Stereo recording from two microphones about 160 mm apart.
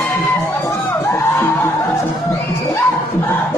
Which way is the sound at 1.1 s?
15° left (ahead or behind).